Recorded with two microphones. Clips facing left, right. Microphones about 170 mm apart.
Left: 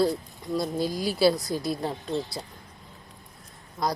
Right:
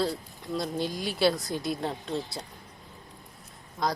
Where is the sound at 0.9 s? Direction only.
40° left (ahead or behind).